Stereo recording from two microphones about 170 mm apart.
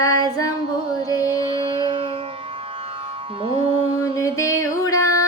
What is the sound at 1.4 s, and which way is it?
Music, 30° right (ahead or behind).